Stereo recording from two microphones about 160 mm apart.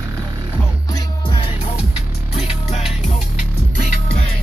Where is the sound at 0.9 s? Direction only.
25° left (ahead or behind); by 2.8 s 45° left (ahead or behind).